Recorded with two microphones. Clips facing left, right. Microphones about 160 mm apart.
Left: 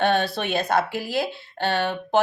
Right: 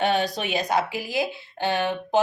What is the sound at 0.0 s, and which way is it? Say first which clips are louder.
A woman's voice: left 1 dB; 15° right (ahead or behind).